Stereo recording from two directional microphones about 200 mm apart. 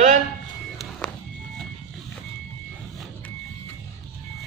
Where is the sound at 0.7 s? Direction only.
Centre (ahead or behind).